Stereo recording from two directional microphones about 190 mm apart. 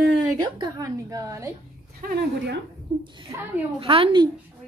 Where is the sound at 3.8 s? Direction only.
25° right (ahead or behind).